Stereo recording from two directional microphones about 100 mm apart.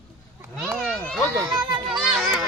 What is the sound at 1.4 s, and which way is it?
A child's voice, 5° right (ahead or behind).